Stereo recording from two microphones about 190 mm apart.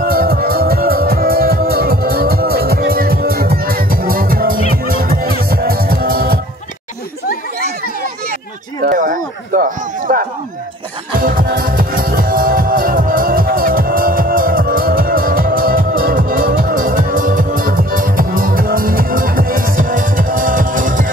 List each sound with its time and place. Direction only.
0.0 s music: 50° right (ahead or behind)
8.8 s a sound: 45° right (ahead or behind)
11.1 s music: 50° right (ahead or behind)